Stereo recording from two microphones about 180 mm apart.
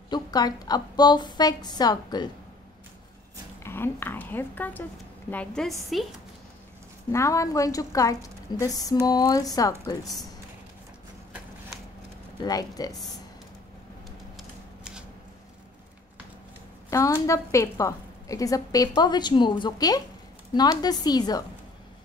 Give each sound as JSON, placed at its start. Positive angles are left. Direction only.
{"t": 0.1, "sound": "a woman's voice", "side_deg": 20}
{"t": 3.6, "sound": "a woman's voice", "side_deg": 10}
{"t": 7.1, "sound": "a woman's voice", "side_deg": 15}
{"t": 12.4, "sound": "a woman's voice", "side_deg": 20}
{"t": 16.9, "sound": "a woman's voice", "side_deg": 15}